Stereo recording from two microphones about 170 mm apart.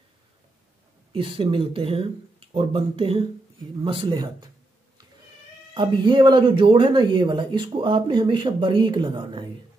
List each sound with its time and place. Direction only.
1.1 s speech: 30° right (ahead or behind)
5.8 s speech: 25° right (ahead or behind)